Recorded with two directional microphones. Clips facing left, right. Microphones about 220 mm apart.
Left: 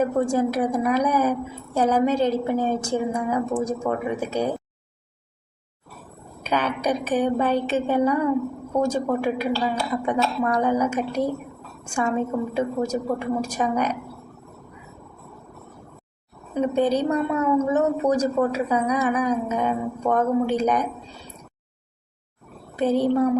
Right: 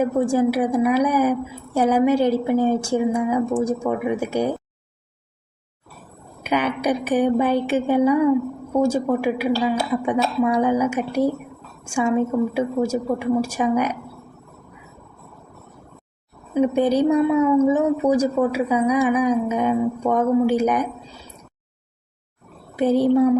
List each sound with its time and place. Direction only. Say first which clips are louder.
0.0 s a woman's voice: right 3 dB; 10° right (ahead or behind)
6.4 s a woman's voice: right 3 dB; 10° right (ahead or behind)
16.6 s a woman's voice: right 3 dB; 10° right (ahead or behind)
22.7 s a woman's voice: right 3 dB; 10° right (ahead or behind)